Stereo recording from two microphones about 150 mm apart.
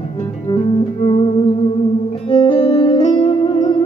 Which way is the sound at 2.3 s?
35° left (ahead or behind).